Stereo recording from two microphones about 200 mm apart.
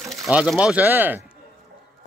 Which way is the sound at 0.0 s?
Centre (ahead or behind).